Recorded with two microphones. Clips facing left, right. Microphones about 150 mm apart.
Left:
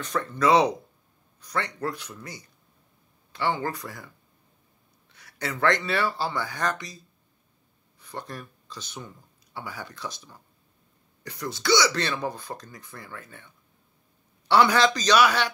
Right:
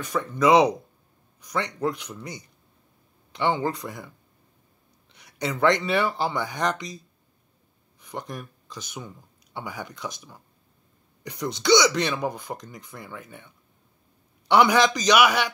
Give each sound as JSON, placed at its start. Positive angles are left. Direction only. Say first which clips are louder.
{"t": 0.0, "sound": "speech", "louder": "right 2 dB", "side_deg": -15}
{"t": 5.1, "sound": "speech", "louder": "right 4 dB", "side_deg": -20}
{"t": 8.0, "sound": "speech", "louder": "right 2 dB", "side_deg": -15}
{"t": 14.5, "sound": "speech", "louder": "right 1 dB", "side_deg": -15}